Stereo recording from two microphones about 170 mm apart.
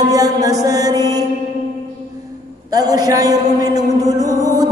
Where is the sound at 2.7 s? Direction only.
20° right (ahead or behind).